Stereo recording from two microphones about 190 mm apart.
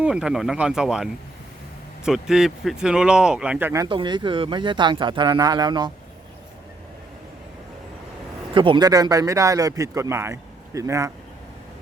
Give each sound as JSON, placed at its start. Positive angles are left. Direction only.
{"t": 0.0, "sound": "speech", "side_deg": -5}
{"t": 3.8, "sound": "speech", "side_deg": -25}
{"t": 8.5, "sound": "speech", "side_deg": -25}